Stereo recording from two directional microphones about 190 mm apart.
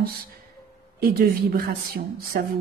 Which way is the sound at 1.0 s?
50° right (ahead or behind).